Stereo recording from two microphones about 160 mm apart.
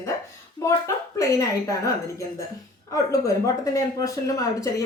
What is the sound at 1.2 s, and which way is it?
Speech, 20° left (ahead or behind).